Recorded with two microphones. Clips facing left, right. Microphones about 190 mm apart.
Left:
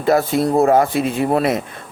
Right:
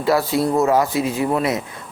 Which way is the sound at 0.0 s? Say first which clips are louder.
Left 2 dB; 50° left (ahead or behind).